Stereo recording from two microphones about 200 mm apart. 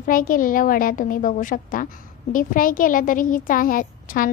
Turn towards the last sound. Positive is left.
turn(degrees=45)  # may be behind; listen again after turning